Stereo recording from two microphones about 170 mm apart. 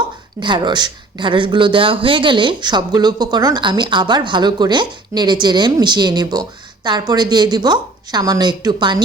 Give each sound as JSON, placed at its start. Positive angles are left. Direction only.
{"t": 0.3, "sound": "speech", "side_deg": -25}